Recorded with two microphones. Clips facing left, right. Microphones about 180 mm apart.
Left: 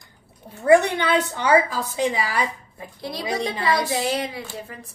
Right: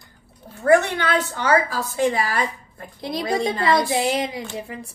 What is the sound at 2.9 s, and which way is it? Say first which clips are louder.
A woman's voice: right 3 dB; 20° right (ahead or behind).